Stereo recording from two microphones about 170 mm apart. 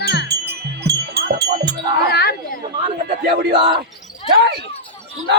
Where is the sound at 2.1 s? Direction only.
70° left (ahead or behind).